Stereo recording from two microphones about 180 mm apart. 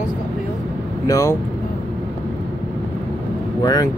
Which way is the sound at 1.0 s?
15° left (ahead or behind).